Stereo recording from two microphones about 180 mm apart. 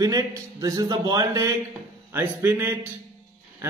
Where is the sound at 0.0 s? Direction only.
20° right (ahead or behind).